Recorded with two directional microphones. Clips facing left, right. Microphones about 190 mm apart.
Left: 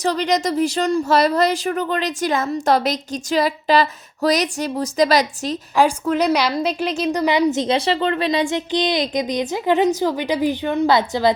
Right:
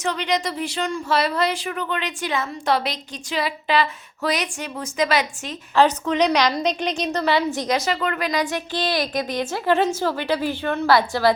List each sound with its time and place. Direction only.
0.0 s speech: 40° left (ahead or behind)
5.7 s a woman's voice: 10° left (ahead or behind)